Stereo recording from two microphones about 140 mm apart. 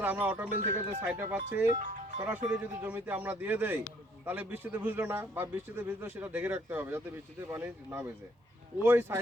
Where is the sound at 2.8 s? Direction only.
10° right (ahead or behind).